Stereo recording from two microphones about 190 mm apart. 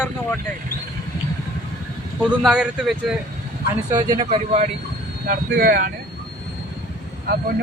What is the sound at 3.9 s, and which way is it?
Speech, 20° right (ahead or behind).